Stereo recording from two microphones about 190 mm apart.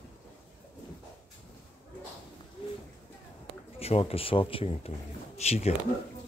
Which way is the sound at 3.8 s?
30° left (ahead or behind).